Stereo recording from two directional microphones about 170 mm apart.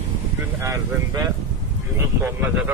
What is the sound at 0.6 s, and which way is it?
Speech, 20° right (ahead or behind).